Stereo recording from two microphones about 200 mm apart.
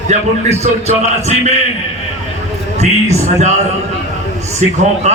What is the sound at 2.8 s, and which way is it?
Speech, 35° right (ahead or behind).